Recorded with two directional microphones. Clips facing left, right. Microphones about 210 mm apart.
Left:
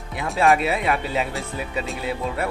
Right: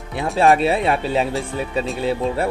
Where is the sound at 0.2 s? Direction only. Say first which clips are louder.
Right 5 dB; 30° right (ahead or behind).